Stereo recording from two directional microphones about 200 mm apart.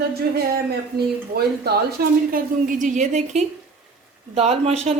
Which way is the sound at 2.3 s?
40° right (ahead or behind).